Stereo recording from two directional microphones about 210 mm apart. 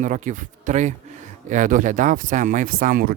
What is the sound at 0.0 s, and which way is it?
Speech, 35° right (ahead or behind).